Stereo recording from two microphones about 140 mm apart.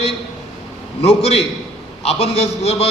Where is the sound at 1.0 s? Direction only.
50° left (ahead or behind).